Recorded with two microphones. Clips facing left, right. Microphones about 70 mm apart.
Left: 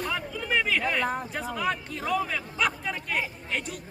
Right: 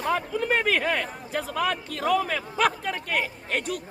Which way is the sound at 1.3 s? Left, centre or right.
Right.